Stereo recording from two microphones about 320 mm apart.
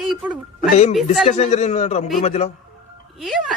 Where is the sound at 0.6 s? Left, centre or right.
Left.